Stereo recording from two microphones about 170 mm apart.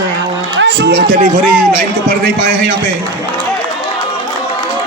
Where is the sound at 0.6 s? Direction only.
90° right.